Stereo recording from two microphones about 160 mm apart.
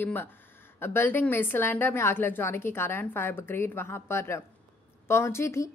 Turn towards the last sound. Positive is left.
turn(degrees=15)  # may be behind; listen again after turning